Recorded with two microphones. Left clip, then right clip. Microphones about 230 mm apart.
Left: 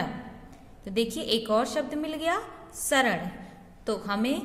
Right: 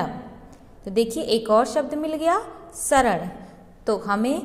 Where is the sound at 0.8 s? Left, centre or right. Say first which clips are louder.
Right 6 dB; centre.